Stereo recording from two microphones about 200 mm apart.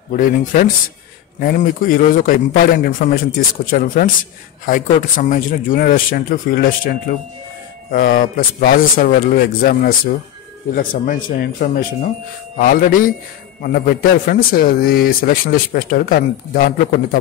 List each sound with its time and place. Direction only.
0.1 s a man's voice: 40° left (ahead or behind)